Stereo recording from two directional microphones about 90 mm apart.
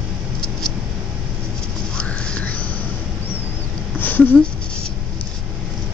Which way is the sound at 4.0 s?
20° left (ahead or behind).